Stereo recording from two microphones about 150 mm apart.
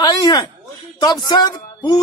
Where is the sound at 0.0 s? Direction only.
25° left (ahead or behind).